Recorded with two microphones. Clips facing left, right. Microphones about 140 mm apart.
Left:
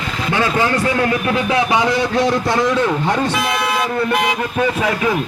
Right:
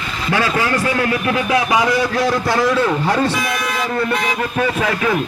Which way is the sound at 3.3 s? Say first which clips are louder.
Left 2 dB; 65° left (ahead or behind).